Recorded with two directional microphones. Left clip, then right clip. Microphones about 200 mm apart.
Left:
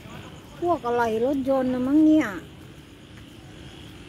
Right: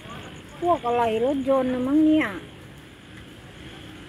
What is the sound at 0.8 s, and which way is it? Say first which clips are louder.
Speech: right 1 dB; 20° left (ahead or behind).